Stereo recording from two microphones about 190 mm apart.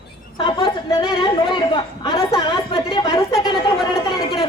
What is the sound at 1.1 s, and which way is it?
Chatter, 25° left (ahead or behind).